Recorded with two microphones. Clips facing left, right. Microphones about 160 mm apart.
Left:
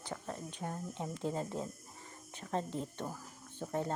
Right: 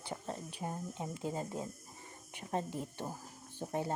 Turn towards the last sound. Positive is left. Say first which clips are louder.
# even
turn(degrees=-15)  # may be behind; listen again after turning